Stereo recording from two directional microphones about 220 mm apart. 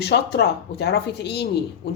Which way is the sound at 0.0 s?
50° left (ahead or behind).